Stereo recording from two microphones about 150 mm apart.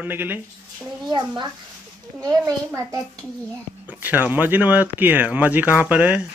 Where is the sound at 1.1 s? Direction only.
30° right (ahead or behind).